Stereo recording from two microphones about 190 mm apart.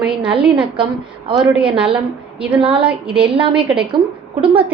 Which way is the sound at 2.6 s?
25° right (ahead or behind).